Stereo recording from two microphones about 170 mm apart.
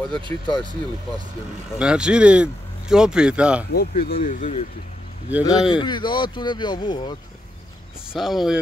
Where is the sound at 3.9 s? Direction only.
55° left (ahead or behind).